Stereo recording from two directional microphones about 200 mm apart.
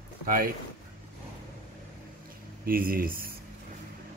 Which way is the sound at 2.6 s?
45° right (ahead or behind).